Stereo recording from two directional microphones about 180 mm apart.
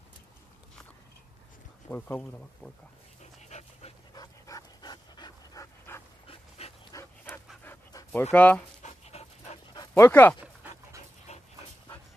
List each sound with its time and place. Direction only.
1.9 s speech: 10° left (ahead or behind)
3.4 s dog: 40° left (ahead or behind)
4.1 s dog: 20° left (ahead or behind)
7.6 s pant: 10° left (ahead or behind)
8.8 s dog: 35° left (ahead or behind)
9.8 s dog: 15° left (ahead or behind)
10.4 s dog: 10° right (ahead or behind)
11.3 s dog: 35° left (ahead or behind)